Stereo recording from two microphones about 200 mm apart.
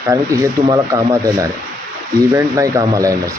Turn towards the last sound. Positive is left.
turn(degrees=-15)  # may be behind; listen again after turning